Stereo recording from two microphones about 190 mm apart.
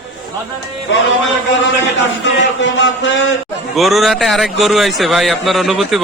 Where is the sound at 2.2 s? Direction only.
70° left (ahead or behind).